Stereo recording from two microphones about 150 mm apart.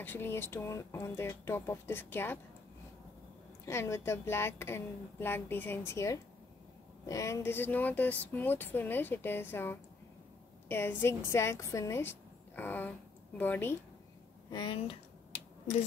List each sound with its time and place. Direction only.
0.0 s speech: 15° left (ahead or behind)
3.6 s speech: 15° left (ahead or behind)
14.5 s speech: 35° left (ahead or behind)